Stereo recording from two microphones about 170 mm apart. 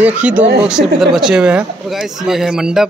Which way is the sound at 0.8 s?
75° right (ahead or behind).